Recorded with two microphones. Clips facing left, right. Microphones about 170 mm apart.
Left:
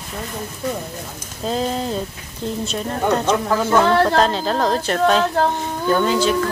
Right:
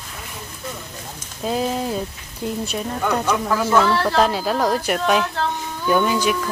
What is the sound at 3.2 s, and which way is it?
Speech, 25° left (ahead or behind).